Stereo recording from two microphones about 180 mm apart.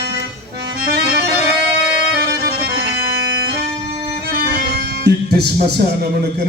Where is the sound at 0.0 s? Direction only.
65° right (ahead or behind).